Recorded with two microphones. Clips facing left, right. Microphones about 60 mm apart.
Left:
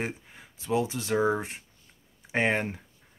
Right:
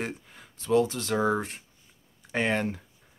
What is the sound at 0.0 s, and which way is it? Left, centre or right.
Speech, centre.